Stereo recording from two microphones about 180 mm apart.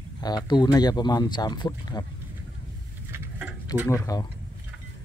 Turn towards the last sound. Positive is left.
turn(degrees=20)  # may be behind; listen again after turning